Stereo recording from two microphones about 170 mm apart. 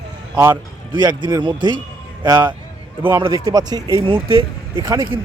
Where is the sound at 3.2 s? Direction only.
25° right (ahead or behind).